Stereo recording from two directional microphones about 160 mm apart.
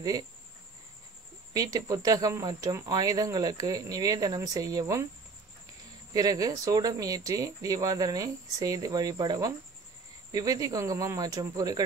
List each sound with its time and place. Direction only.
1.5 s speech: 20° right (ahead or behind)
6.1 s speech: 25° right (ahead or behind)